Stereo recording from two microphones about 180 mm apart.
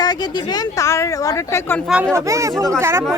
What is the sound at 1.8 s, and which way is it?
Speech, 5° right (ahead or behind).